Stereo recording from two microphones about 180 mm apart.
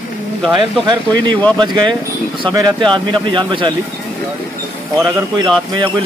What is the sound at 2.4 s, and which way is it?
Speech, 20° right (ahead or behind).